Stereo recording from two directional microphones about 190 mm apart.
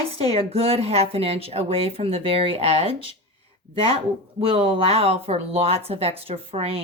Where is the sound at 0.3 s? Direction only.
30° right (ahead or behind).